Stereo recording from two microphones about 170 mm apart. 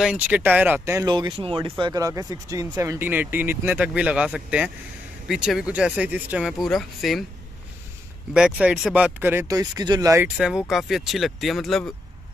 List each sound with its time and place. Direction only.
0.0 s speech: 5° right (ahead or behind)
1.0 s speech: 25° right (ahead or behind); by 7.2 s centre (ahead or behind)
8.3 s speech: 5° right (ahead or behind); by 10.2 s 20° right (ahead or behind)
10.2 s speech: 5° right (ahead or behind)